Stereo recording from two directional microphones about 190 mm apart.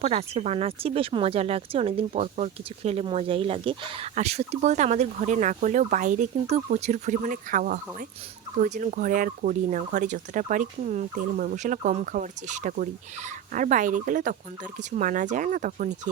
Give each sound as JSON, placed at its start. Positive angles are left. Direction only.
{"t": 0.0, "sound": "speech", "side_deg": -35}